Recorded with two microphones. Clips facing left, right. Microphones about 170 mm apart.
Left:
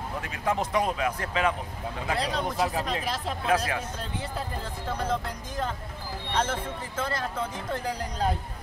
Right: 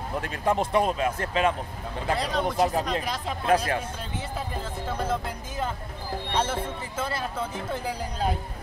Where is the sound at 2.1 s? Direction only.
Centre (ahead or behind).